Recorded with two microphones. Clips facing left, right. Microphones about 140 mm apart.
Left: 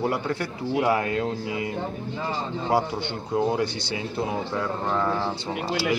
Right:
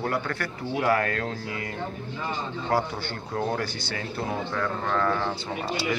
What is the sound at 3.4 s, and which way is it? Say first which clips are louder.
A man's voice: left 5 dB; 20° left (ahead or behind).